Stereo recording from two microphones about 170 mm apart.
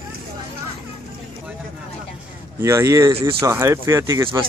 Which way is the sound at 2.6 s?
15° right (ahead or behind).